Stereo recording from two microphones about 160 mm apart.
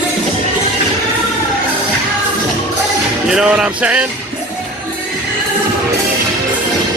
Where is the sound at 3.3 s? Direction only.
5° right (ahead or behind).